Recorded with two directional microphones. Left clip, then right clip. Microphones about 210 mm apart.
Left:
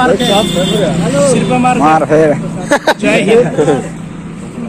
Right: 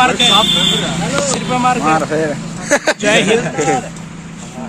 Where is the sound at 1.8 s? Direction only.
5° left (ahead or behind).